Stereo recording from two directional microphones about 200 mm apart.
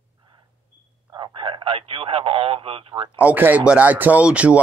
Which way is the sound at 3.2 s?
10° right (ahead or behind).